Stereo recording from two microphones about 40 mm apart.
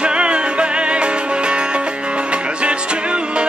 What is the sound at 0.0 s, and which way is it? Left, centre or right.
Music, right.